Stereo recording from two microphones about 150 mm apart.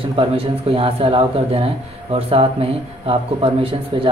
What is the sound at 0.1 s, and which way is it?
Speech, 35° right (ahead or behind).